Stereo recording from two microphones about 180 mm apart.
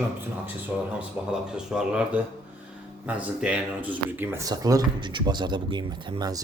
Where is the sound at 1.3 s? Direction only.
5° right (ahead or behind).